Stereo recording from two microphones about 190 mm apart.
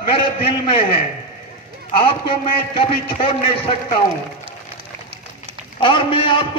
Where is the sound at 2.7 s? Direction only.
30° left (ahead or behind).